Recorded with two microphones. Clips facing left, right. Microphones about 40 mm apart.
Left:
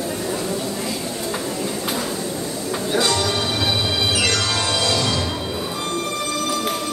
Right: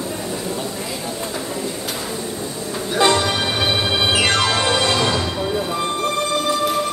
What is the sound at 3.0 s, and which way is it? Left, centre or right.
Music, right.